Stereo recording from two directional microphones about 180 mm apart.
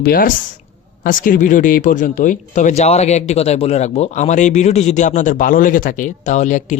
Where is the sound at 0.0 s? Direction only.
50° left (ahead or behind).